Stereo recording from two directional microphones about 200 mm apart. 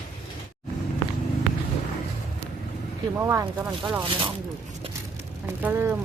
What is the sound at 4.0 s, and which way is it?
Speech, 25° right (ahead or behind).